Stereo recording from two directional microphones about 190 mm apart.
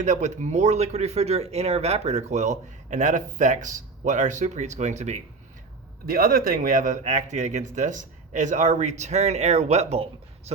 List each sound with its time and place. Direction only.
0.0 s speech: 40° right (ahead or behind)
6.1 s speech: 50° right (ahead or behind); by 10.5 s 35° right (ahead or behind)